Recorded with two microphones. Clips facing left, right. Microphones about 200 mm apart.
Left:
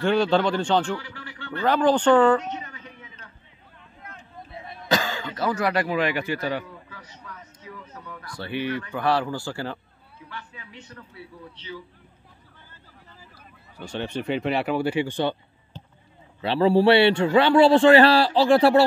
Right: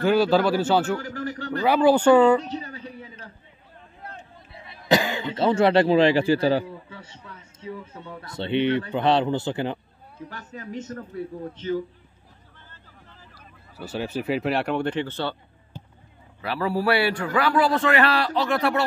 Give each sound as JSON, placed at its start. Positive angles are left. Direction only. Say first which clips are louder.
{"t": 0.0, "sound": "speech", "louder": "right 2 dB", "side_deg": -5}
{"t": 0.9, "sound": "a man's voice", "louder": "right 7 dB", "side_deg": -45}
{"t": 1.6, "sound": "speech", "louder": "right 2 dB", "side_deg": -10}
{"t": 2.4, "sound": "a sound", "louder": "right 2 dB", "side_deg": -35}
{"t": 4.0, "sound": "vehicle", "louder": "right 4 dB", "side_deg": -35}
{"t": 4.8, "sound": "speech", "louder": "right 4 dB", "side_deg": -20}
{"t": 10.1, "sound": "speech", "louder": "right 4 dB", "side_deg": -45}
{"t": 13.7, "sound": "speech", "louder": "right 1 dB", "side_deg": -5}
{"t": 15.7, "sound": "a sound", "louder": "right 1 dB", "side_deg": -10}
{"t": 16.3, "sound": "a man's voice", "louder": "left 7 dB", "side_deg": 25}